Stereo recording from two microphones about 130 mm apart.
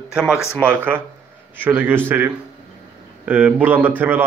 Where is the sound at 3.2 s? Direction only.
10° right (ahead or behind).